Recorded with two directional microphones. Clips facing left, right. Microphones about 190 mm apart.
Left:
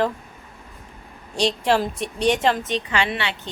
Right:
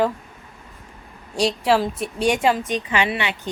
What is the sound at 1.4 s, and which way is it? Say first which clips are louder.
A woman's voice: right 1 dB; 5° right (ahead or behind).